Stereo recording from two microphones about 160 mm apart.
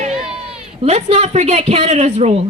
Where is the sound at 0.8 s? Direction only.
45° right (ahead or behind).